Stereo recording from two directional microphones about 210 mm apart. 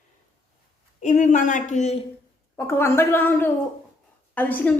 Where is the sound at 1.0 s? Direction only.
35° left (ahead or behind).